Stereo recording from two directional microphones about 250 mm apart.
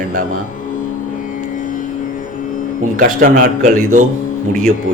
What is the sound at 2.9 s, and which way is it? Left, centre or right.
Speech, right.